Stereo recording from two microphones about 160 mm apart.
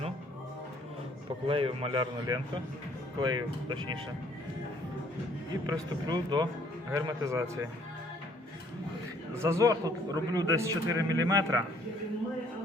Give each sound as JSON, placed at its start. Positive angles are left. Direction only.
{"t": 1.5, "sound": "a man's voice", "side_deg": -35}
{"t": 6.1, "sound": "a man's voice", "side_deg": -25}
{"t": 9.3, "sound": "a man's voice", "side_deg": -15}